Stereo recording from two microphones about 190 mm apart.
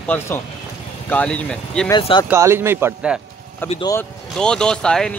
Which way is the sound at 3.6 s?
10° left (ahead or behind).